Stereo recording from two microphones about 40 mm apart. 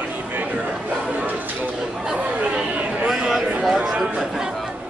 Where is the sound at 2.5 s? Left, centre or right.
Right.